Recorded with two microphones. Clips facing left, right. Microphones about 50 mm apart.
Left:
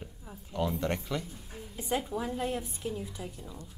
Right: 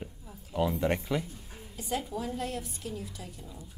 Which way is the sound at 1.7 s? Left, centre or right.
Centre.